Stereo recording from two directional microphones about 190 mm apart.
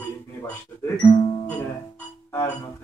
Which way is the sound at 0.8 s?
20° left (ahead or behind).